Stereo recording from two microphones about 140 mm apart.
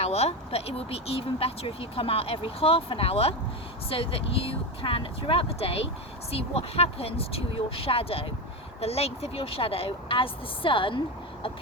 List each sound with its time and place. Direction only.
0.0 s speech: 50° left (ahead or behind)